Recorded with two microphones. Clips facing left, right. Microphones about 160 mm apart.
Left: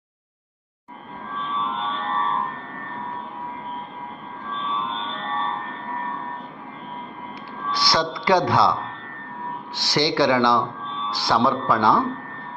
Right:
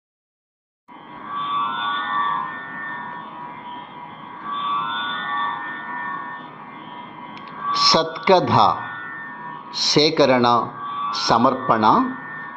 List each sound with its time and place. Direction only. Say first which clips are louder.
1.4 s music: even; 40° left (ahead or behind)
4.5 s music: right 1 dB; 35° left (ahead or behind)
7.7 s a woman's voice: right 3 dB; 20° right (ahead or behind)
9.7 s a woman's voice: right 5 dB; 20° right (ahead or behind)